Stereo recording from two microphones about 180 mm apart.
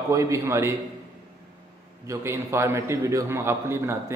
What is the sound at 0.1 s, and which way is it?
Speech, 15° right (ahead or behind).